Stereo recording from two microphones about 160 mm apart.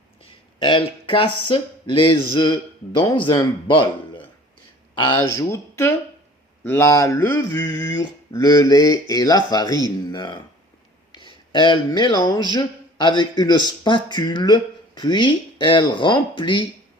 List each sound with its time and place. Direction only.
0.2 s speech: 35° left (ahead or behind)